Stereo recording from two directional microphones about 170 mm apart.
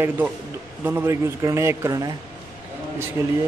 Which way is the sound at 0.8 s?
15° right (ahead or behind).